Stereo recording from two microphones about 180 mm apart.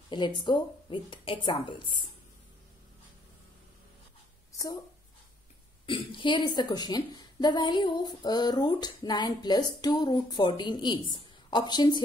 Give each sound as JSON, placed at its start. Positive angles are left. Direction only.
{"t": 0.1, "sound": "a woman's voice", "side_deg": 25}
{"t": 4.5, "sound": "a sound", "side_deg": 20}
{"t": 5.9, "sound": "a woman's voice", "side_deg": 25}